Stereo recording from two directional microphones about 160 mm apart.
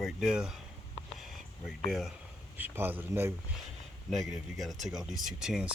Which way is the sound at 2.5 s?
10° right (ahead or behind).